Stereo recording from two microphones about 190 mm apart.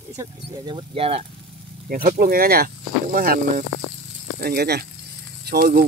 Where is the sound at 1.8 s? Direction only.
50° right (ahead or behind).